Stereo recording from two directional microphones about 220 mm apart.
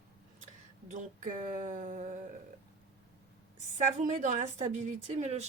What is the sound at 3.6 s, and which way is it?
A woman's voice, 35° right (ahead or behind).